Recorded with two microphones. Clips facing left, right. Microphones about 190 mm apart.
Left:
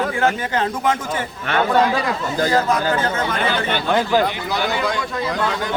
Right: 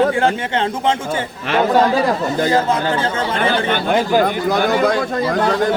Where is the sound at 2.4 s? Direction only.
25° right (ahead or behind).